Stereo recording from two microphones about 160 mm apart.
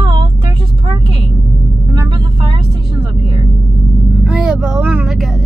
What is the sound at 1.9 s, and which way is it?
Vehicle, 30° right (ahead or behind).